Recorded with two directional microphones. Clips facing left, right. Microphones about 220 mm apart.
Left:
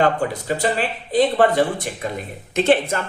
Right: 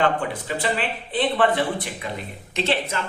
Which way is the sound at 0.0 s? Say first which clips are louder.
Left 3 dB; 40° left (ahead or behind).